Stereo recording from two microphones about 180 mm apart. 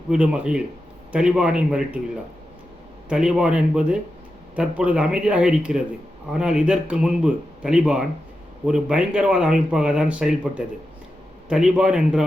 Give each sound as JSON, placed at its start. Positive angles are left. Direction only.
{"t": 0.1, "sound": "speech", "side_deg": -5}
{"t": 3.1, "sound": "speech", "side_deg": -5}